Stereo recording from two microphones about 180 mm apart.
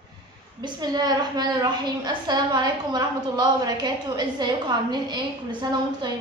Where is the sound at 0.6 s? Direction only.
25° right (ahead or behind).